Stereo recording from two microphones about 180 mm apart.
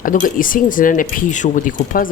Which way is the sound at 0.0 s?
50° left (ahead or behind).